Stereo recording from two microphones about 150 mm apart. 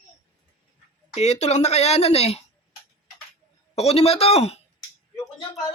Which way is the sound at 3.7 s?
45° left (ahead or behind).